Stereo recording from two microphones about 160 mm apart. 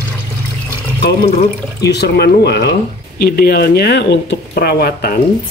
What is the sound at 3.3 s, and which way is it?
Speech, 75° left (ahead or behind).